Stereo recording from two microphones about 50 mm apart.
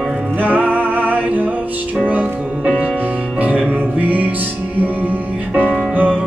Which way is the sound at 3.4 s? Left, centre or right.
Right.